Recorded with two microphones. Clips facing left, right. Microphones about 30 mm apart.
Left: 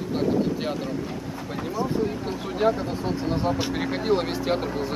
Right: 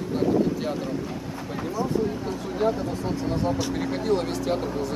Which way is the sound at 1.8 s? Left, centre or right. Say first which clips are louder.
Even; left.